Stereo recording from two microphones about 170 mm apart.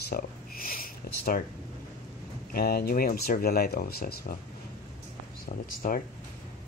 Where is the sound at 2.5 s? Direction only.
65° left (ahead or behind).